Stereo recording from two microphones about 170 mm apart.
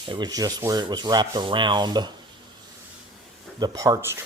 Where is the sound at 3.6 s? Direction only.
20° right (ahead or behind).